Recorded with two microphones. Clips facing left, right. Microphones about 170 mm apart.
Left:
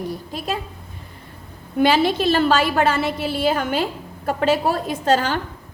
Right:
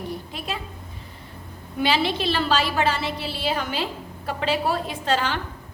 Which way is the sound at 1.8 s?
45° left (ahead or behind).